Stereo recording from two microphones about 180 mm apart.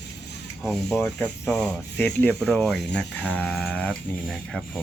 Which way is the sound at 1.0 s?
5° left (ahead or behind).